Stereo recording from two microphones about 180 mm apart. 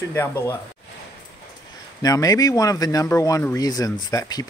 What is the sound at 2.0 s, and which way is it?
Speech, 20° left (ahead or behind).